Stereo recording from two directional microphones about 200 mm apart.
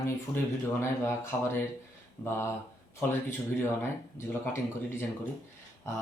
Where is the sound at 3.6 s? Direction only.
10° left (ahead or behind).